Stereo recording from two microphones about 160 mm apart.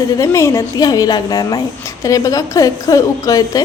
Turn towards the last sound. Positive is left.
turn(degrees=20)  # may be behind; listen again after turning